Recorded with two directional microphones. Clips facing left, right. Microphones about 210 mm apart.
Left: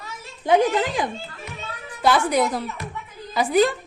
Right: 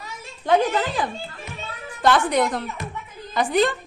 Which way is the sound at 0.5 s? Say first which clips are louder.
Left 1 dB; 20° left (ahead or behind).